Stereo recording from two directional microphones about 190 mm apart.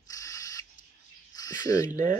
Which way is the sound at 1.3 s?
20° left (ahead or behind).